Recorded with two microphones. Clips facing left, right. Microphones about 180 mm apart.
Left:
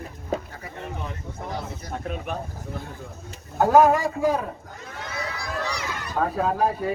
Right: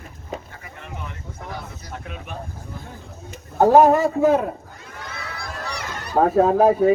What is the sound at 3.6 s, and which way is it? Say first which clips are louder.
Speech: right 4 dB; 40° right (ahead or behind).